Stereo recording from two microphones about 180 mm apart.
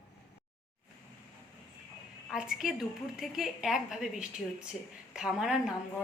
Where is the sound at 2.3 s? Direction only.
5° right (ahead or behind).